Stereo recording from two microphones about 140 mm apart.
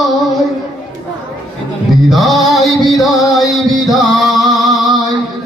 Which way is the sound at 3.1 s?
25° left (ahead or behind).